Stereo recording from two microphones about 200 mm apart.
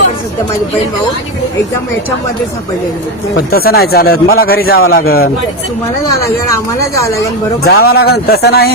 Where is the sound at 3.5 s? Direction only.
50° left (ahead or behind).